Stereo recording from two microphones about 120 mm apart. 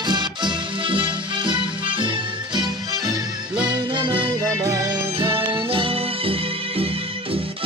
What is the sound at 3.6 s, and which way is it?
Music, 40° right (ahead or behind).